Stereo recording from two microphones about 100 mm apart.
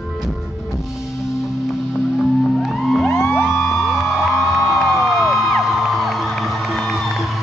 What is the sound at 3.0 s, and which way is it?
Music, 25° left (ahead or behind).